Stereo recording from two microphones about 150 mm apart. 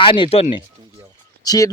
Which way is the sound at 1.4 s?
25° left (ahead or behind).